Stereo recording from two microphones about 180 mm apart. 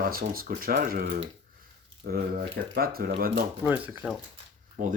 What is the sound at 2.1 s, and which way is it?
Speech, 55° right (ahead or behind).